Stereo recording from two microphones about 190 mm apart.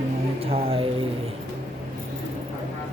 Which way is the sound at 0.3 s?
30° right (ahead or behind).